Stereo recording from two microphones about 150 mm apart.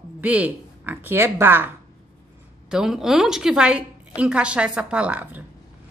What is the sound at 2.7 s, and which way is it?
A woman's voice, 5° right (ahead or behind).